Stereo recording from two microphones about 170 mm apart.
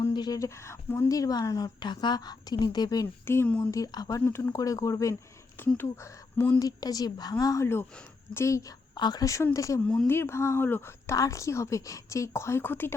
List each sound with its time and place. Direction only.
0.0 s a woman's voice: 25° left (ahead or behind)
9.8 s a woman's voice: 10° left (ahead or behind)